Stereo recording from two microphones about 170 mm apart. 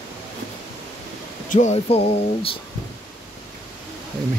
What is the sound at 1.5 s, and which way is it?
Speech, 45° left (ahead or behind).